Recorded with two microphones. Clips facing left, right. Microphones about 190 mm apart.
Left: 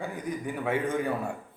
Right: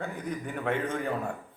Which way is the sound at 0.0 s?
10° left (ahead or behind).